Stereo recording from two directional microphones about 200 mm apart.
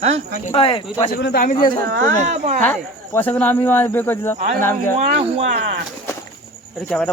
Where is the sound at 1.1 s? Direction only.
50° left (ahead or behind).